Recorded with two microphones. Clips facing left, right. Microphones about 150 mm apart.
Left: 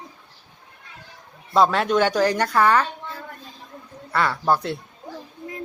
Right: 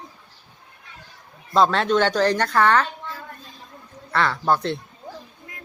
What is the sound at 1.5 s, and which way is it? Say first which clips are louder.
Speech: even; 10° left (ahead or behind).